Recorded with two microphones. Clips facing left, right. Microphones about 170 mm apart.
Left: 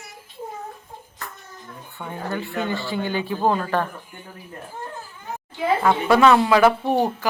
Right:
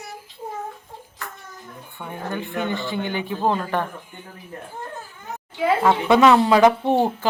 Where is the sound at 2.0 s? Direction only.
15° right (ahead or behind).